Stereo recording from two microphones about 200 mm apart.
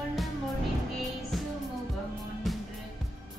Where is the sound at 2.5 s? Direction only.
Centre (ahead or behind).